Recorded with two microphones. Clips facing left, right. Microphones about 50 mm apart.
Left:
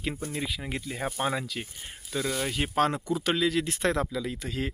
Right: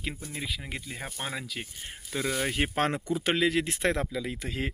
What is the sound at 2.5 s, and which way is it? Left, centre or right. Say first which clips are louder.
Speech: left 2 dB; right.